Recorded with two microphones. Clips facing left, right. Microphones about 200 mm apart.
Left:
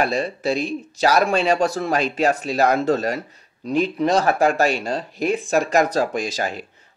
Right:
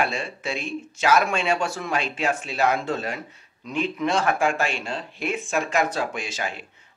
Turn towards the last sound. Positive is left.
turn(degrees=40)  # may be behind; listen again after turning